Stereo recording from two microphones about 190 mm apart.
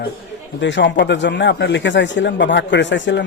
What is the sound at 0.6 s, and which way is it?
Speech, 70° left (ahead or behind).